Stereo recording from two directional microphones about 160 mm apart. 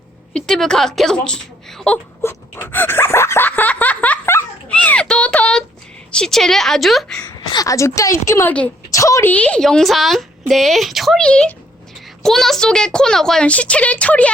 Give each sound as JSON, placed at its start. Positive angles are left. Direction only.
{"t": 0.3, "sound": "speech", "side_deg": 5}
{"t": 2.2, "sound": "a sound", "side_deg": 15}
{"t": 6.1, "sound": "speech", "side_deg": 5}
{"t": 7.3, "sound": "a woman's voice", "side_deg": 25}
{"t": 9.3, "sound": "speech", "side_deg": 10}